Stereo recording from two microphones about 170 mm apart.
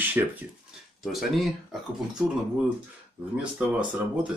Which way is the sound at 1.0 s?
Centre (ahead or behind).